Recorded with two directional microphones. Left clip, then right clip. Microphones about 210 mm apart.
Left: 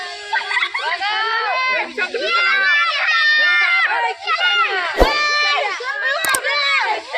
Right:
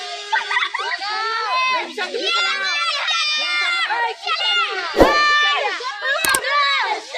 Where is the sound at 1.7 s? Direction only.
55° right (ahead or behind).